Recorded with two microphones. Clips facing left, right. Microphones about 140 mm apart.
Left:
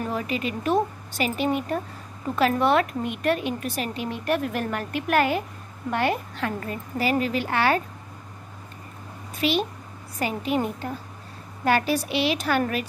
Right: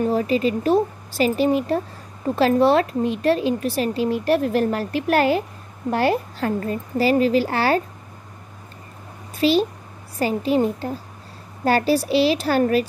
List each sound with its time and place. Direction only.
0.1 s a woman's voice: 35° right (ahead or behind)
9.4 s a woman's voice: 35° right (ahead or behind)